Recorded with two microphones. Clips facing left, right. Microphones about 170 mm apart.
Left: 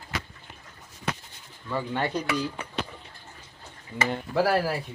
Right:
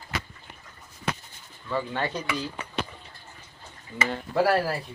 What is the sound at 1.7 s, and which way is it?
Speech, 15° left (ahead or behind).